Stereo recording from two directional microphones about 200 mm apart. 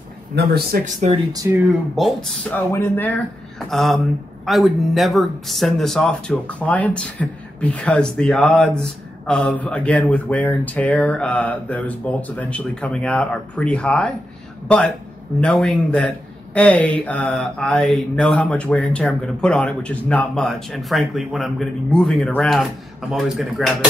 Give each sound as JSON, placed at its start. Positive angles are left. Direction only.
{"t": 0.4, "sound": "speech", "side_deg": -50}
{"t": 1.3, "sound": "speech", "side_deg": -15}
{"t": 2.0, "sound": "speech", "side_deg": 0}